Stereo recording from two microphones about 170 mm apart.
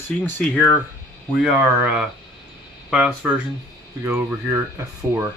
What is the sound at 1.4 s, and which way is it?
Speech, 5° right (ahead or behind).